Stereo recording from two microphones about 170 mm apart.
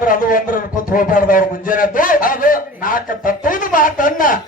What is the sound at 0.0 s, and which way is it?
A man's voice, 55° left (ahead or behind).